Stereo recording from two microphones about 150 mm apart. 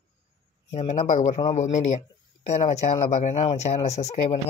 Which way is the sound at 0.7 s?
50° left (ahead or behind).